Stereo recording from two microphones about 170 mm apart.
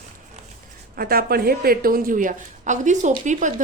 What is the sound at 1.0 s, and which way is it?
A woman's voice, 60° right (ahead or behind).